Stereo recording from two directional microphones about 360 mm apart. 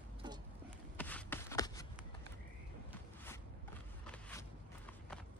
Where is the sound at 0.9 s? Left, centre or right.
Centre.